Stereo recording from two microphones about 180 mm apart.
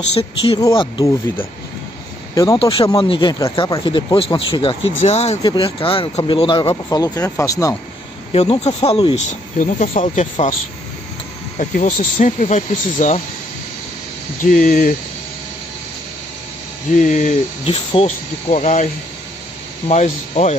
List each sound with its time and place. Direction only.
0.2 s speech: 25° left (ahead or behind)
2.3 s speech: 20° left (ahead or behind); by 5.4 s 35° left (ahead or behind)
5.4 s speech: 25° left (ahead or behind)
8.3 s speech: 35° left (ahead or behind)
9.6 s speech: 45° left (ahead or behind)
11.5 s speech: 40° left (ahead or behind)
14.4 s speech: 45° left (ahead or behind)
17.0 s speech: 45° left (ahead or behind)
19.9 s speech: 40° left (ahead or behind)